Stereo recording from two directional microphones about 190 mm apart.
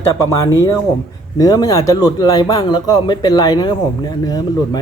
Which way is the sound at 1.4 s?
20° left (ahead or behind).